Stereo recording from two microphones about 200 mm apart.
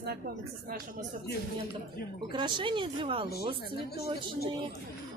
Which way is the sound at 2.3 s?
25° right (ahead or behind).